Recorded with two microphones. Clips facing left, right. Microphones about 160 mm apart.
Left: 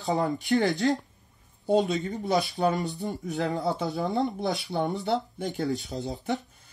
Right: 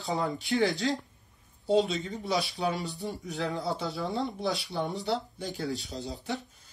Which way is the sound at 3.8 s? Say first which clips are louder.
Left 4 dB; 20° left (ahead or behind).